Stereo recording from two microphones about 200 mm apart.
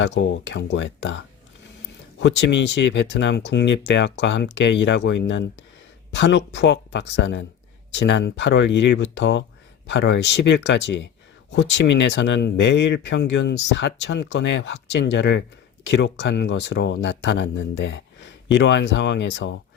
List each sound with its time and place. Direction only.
0.0 s speech: 60° left (ahead or behind)